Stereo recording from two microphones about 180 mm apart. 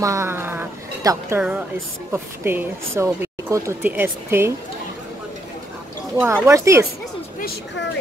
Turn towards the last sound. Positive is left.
turn(degrees=60)  # may be behind; listen again after turning